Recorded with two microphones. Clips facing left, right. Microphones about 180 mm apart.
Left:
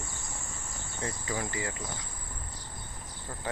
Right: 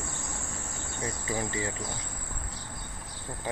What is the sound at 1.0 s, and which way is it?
Speech, 20° right (ahead or behind).